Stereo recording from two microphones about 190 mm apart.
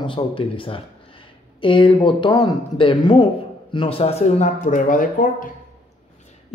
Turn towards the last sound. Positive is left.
turn(degrees=45)  # may be behind; listen again after turning